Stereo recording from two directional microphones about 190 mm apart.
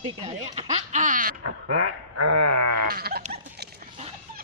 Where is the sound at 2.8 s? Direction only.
55° right (ahead or behind).